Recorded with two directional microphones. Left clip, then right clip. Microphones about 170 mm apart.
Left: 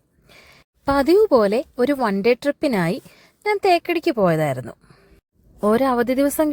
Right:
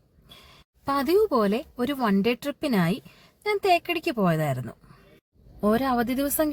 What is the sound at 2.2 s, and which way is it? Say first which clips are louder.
A woman's voice: left 8 dB; 25° left (ahead or behind).